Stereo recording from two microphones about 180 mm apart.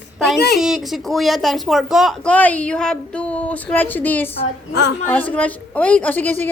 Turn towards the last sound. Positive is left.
turn(degrees=10)  # may be behind; listen again after turning